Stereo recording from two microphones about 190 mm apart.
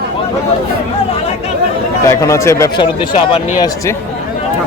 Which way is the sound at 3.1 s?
30° left (ahead or behind).